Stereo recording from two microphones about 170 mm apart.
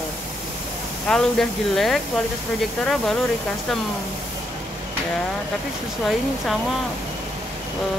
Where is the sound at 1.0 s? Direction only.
5° left (ahead or behind).